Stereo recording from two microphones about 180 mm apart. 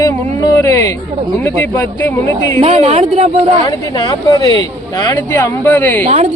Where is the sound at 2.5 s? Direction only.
35° right (ahead or behind).